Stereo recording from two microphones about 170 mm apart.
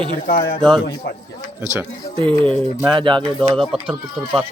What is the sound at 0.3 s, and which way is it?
Speech, 60° left (ahead or behind).